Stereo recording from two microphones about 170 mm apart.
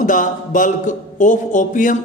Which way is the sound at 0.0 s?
50° left (ahead or behind).